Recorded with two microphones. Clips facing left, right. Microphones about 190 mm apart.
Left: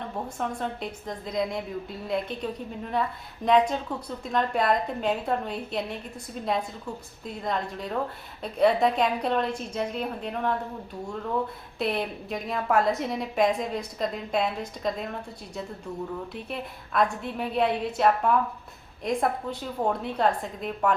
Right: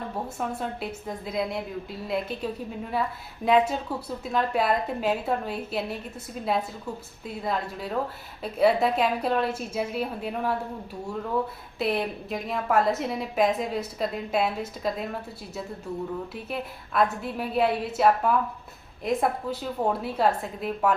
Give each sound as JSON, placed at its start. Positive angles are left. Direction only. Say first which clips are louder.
{"t": 0.3, "sound": "a woman's voice", "louder": "left 1 dB", "side_deg": -5}
{"t": 7.3, "sound": "a woman's voice", "louder": "even", "side_deg": -5}
{"t": 11.8, "sound": "a woman's voice", "louder": "right 1 dB", "side_deg": 0}
{"t": 16.3, "sound": "a woman's voice", "louder": "right 2 dB", "side_deg": -5}